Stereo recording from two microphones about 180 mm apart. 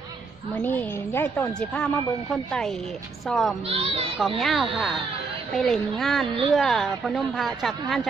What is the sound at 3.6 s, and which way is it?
Speech, 35° right (ahead or behind).